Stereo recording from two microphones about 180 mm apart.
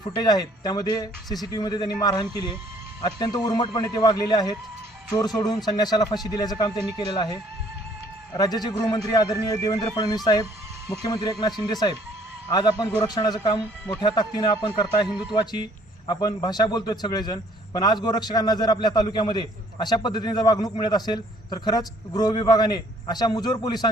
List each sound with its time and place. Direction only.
0.0 s a man's voice: 20° left (ahead or behind)